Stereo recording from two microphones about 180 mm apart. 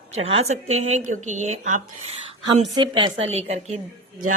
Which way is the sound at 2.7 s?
25° right (ahead or behind).